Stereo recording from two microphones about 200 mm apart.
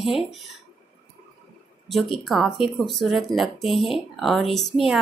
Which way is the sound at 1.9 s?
Centre (ahead or behind).